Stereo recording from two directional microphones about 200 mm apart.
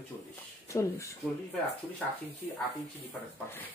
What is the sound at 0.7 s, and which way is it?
Speech, 15° left (ahead or behind).